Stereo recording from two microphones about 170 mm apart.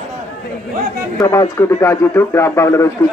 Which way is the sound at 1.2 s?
15° left (ahead or behind).